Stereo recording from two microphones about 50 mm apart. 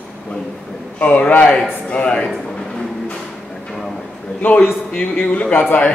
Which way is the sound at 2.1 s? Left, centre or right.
Centre.